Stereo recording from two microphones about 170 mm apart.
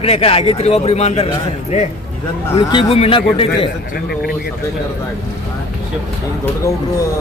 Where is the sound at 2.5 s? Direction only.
35° left (ahead or behind).